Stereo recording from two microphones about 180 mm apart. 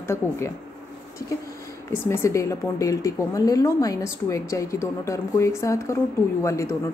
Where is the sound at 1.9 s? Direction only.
15° left (ahead or behind).